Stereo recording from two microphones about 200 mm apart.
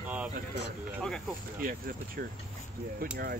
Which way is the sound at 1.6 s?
45° right (ahead or behind).